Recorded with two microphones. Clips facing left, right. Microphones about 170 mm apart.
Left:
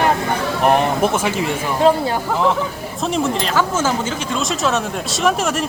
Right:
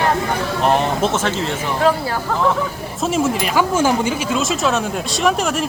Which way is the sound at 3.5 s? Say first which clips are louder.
Right 4 dB; 15° right (ahead or behind).